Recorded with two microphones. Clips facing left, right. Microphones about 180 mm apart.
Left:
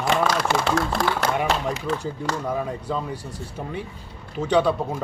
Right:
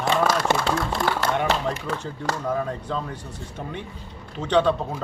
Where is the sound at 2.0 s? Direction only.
10° left (ahead or behind).